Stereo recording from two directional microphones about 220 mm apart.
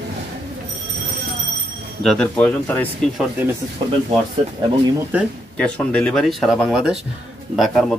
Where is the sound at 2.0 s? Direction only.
5° left (ahead or behind).